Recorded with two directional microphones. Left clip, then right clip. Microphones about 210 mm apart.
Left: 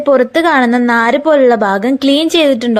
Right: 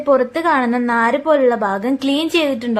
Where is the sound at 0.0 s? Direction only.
25° left (ahead or behind).